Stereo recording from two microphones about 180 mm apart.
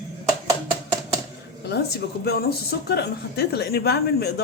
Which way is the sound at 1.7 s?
60° left (ahead or behind).